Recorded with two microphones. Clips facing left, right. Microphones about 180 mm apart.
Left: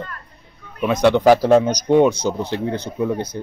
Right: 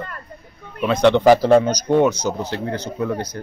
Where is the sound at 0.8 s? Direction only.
10° left (ahead or behind).